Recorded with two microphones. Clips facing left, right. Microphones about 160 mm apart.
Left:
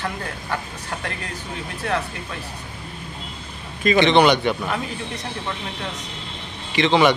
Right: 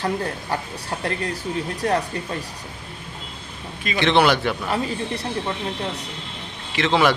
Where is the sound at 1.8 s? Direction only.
40° right (ahead or behind).